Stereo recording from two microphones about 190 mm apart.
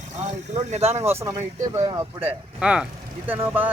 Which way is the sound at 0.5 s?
35° right (ahead or behind).